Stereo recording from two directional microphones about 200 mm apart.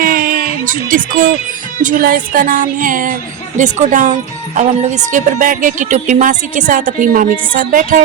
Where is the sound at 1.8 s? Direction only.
45° right (ahead or behind).